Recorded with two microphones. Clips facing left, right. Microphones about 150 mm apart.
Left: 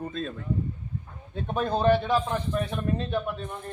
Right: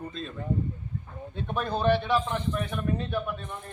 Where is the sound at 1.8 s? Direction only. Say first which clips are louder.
Left 2 dB; 40° left (ahead or behind).